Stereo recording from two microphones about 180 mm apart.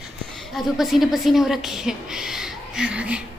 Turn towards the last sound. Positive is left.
turn(degrees=-5)  # may be behind; listen again after turning